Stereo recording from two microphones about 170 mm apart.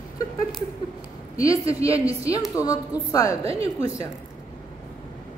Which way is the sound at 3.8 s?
20° left (ahead or behind).